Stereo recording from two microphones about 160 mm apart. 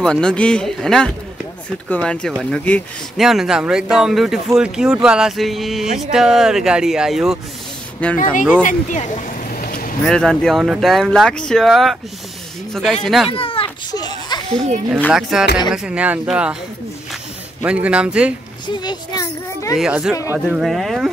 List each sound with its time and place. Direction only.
0.0 s speech: 5° left (ahead or behind)
3.2 s speech: centre (ahead or behind)
8.0 s speech: 5° left (ahead or behind)
8.6 s a sound: 50° left (ahead or behind)
10.0 s speech: 5° left (ahead or behind)
13.3 s a child's voice: 35° left (ahead or behind)
15.1 s speech: centre (ahead or behind)
17.6 s speech: 10° right (ahead or behind)
18.7 s a child's voice: 25° left (ahead or behind)
19.8 s speech: 5° right (ahead or behind)